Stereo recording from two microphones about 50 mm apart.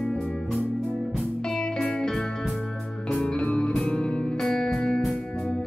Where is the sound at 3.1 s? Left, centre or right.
Left.